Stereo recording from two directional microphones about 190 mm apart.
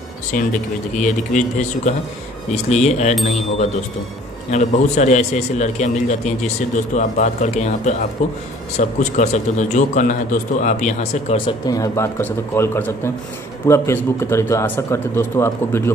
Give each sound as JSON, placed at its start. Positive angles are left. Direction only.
{"t": 0.3, "sound": "a man's voice", "side_deg": 40}
{"t": 4.5, "sound": "a man's voice", "side_deg": 40}